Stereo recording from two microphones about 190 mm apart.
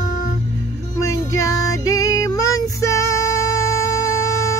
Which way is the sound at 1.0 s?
15° left (ahead or behind).